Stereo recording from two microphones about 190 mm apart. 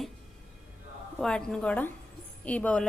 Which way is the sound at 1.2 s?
5° left (ahead or behind).